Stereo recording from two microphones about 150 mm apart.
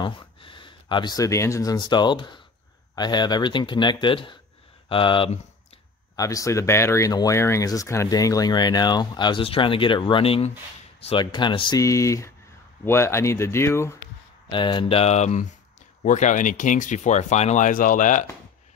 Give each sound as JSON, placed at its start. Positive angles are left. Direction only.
{"t": 0.0, "sound": "speech", "side_deg": 35}
{"t": 6.1, "sound": "speech", "side_deg": 20}
{"t": 11.8, "sound": "speech", "side_deg": 20}
{"t": 14.5, "sound": "speech", "side_deg": 35}